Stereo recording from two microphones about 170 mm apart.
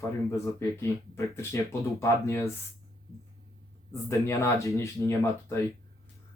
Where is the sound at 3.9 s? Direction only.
15° left (ahead or behind).